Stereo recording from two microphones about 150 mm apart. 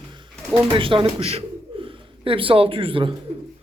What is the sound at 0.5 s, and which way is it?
Speech, 35° right (ahead or behind).